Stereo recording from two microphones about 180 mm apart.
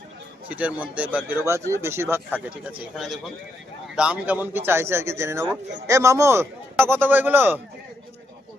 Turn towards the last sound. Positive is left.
turn(degrees=-10)  # may be behind; listen again after turning